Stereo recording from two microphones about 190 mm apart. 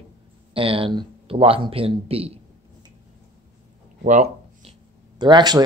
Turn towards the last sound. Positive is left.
turn(degrees=-20)  # may be behind; listen again after turning